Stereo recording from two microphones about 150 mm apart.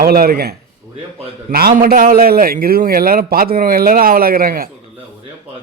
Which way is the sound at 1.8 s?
75° right (ahead or behind).